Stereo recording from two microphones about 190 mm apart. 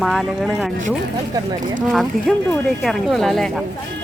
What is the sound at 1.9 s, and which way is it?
Speech, centre (ahead or behind).